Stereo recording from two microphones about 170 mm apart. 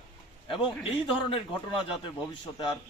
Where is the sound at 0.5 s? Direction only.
30° left (ahead or behind).